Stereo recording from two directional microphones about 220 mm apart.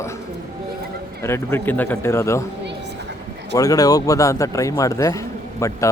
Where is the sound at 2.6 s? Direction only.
50° right (ahead or behind).